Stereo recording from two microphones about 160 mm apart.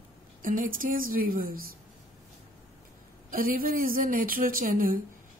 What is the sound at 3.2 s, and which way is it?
Speech, 60° right (ahead or behind).